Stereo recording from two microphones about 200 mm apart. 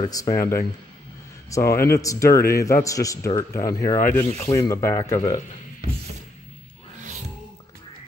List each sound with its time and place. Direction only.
0.0 s a man's voice: 15° left (ahead or behind)